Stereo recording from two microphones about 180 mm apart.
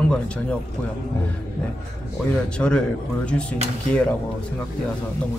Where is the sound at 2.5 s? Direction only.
5° left (ahead or behind).